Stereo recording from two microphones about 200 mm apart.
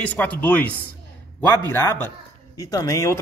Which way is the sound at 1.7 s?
10° left (ahead or behind).